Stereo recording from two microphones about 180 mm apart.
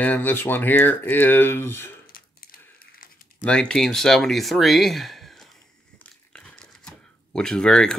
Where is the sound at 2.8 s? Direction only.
55° left (ahead or behind).